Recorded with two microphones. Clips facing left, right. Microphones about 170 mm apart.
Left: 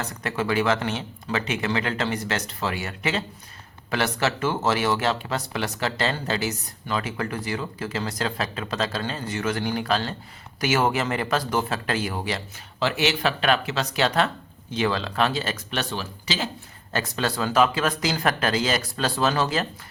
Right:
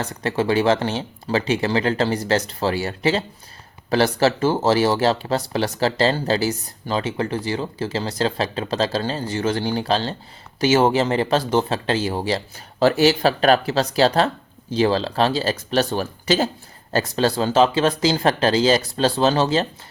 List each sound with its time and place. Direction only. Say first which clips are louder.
0.0 s speech: right 6 dB; 30° right (ahead or behind); by 16.5 s 50° right (ahead or behind)
16.9 s speech: right 7 dB; 30° right (ahead or behind)